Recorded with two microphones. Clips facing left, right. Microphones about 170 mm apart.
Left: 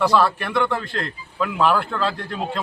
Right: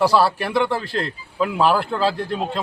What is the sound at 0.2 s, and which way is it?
Speech, 35° right (ahead or behind).